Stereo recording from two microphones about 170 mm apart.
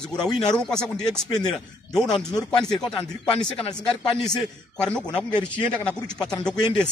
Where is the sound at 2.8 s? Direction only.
30° left (ahead or behind).